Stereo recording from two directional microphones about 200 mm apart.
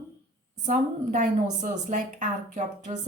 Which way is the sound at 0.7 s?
40° right (ahead or behind).